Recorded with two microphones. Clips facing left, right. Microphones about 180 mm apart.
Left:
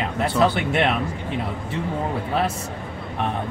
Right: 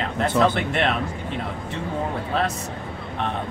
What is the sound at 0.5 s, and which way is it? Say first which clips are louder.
Speech: left 2 dB; 5° left (ahead or behind).